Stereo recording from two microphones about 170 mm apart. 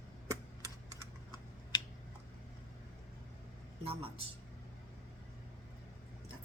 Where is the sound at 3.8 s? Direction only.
35° right (ahead or behind).